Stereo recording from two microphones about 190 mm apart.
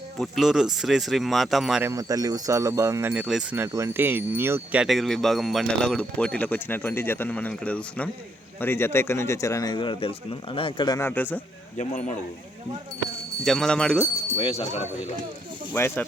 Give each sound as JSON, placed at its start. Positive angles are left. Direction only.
{"t": 0.2, "sound": "speech", "side_deg": 0}
{"t": 1.9, "sound": "speech", "side_deg": -20}
{"t": 11.8, "sound": "speech", "side_deg": 40}
{"t": 13.4, "sound": "speech", "side_deg": 0}
{"t": 14.3, "sound": "speech", "side_deg": 30}
{"t": 15.7, "sound": "speech", "side_deg": 10}